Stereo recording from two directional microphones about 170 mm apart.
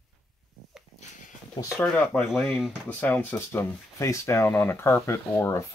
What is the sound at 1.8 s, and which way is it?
Speech, 5° left (ahead or behind).